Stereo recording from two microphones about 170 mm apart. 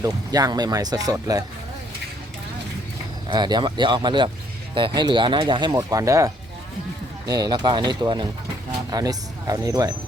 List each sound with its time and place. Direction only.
0.0 s speech: 20° right (ahead or behind)
3.2 s speech: 25° right (ahead or behind)